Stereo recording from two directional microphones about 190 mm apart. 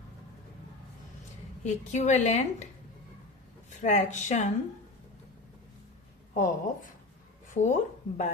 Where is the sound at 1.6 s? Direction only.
35° left (ahead or behind).